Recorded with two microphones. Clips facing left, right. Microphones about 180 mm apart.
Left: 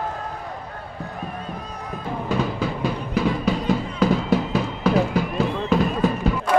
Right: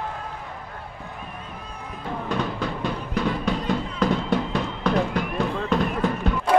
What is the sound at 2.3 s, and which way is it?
Music, 5° left (ahead or behind).